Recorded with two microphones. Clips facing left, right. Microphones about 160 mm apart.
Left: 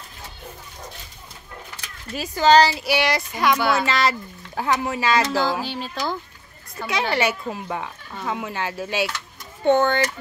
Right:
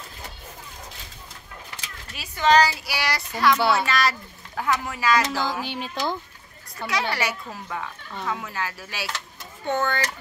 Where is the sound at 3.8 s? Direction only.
25° left (ahead or behind).